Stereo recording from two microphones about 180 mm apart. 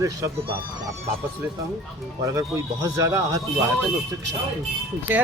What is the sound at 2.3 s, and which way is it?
Speech, 15° right (ahead or behind).